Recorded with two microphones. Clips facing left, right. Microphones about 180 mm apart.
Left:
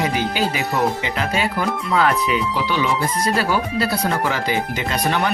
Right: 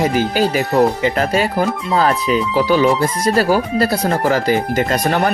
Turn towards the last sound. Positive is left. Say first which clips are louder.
# right 4 dB
turn(degrees=-45)  # may be behind; listen again after turning